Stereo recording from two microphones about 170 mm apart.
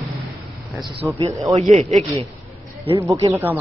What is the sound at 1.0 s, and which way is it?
Speech, 20° right (ahead or behind).